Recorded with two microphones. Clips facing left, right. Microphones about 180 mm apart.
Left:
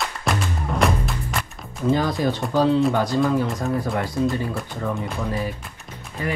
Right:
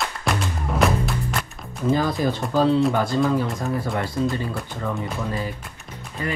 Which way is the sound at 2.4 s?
Centre (ahead or behind).